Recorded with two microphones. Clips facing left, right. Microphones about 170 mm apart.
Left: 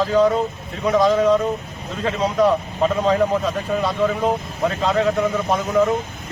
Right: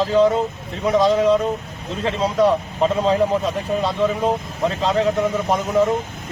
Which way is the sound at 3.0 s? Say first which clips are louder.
Even; 25° right (ahead or behind).